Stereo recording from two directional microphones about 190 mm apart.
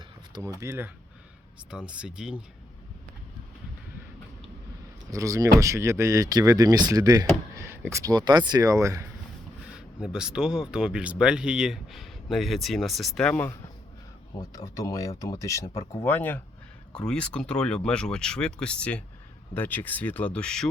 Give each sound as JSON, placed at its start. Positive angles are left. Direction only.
{"t": 0.3, "sound": "speech", "side_deg": -15}
{"t": 5.1, "sound": "speech", "side_deg": -15}
{"t": 9.6, "sound": "speech", "side_deg": -5}